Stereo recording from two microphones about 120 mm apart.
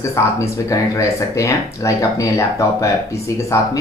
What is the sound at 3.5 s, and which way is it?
Speech, 25° left (ahead or behind).